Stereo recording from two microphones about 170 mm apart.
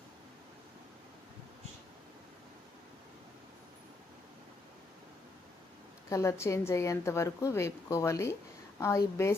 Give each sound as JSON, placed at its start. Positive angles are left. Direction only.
{"t": 6.1, "sound": "a woman's voice", "side_deg": 15}